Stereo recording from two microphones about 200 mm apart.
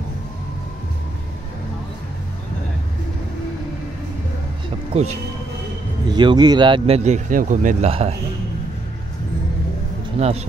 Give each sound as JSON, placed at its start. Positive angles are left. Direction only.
{"t": 6.0, "sound": "speech", "side_deg": -20}
{"t": 10.1, "sound": "speech", "side_deg": -30}